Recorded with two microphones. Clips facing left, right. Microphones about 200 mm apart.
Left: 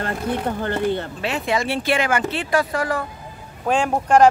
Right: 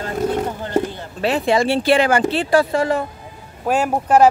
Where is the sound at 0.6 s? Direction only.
60° left (ahead or behind).